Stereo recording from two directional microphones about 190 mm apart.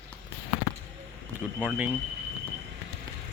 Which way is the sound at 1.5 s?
5° right (ahead or behind).